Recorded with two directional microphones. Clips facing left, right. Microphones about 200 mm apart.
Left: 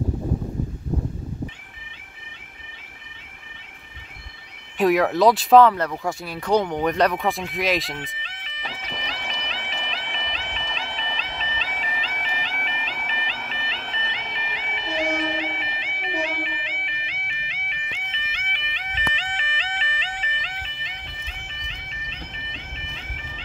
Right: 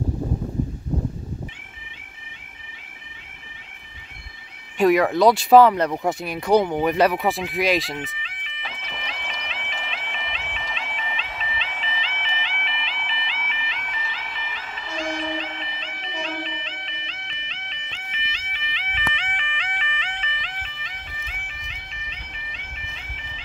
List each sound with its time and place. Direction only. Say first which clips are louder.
4.7 s speech: right 1 dB; centre (ahead or behind)
5.6 s speech: right 1 dB; 15° right (ahead or behind); by 8.1 s centre (ahead or behind)
8.5 s bagpipes: left 3 dB; 40° left (ahead or behind); by 18.0 s 10° left (ahead or behind)
18.3 s music: even; 55° left (ahead or behind); by 20.5 s 35° left (ahead or behind)